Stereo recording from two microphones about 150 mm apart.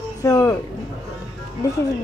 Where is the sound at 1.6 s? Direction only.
20° left (ahead or behind).